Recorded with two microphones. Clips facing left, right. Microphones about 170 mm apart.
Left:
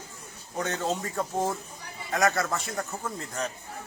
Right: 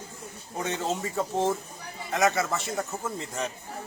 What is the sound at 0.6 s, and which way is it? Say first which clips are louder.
Speech: even; 5° right (ahead or behind).